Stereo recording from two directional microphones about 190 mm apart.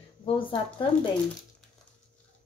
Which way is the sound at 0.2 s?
25° left (ahead or behind).